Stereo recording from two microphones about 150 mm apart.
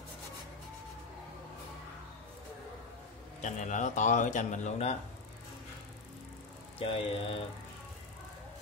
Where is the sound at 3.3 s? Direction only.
55° left (ahead or behind).